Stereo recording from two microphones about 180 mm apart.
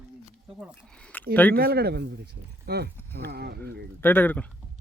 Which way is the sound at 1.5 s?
60° right (ahead or behind).